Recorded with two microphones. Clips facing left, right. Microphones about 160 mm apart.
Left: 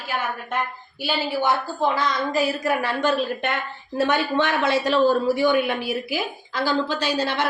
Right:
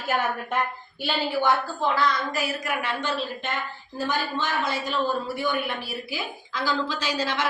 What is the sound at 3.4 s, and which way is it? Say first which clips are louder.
A woman's voice: left 5 dB; 70° left (ahead or behind).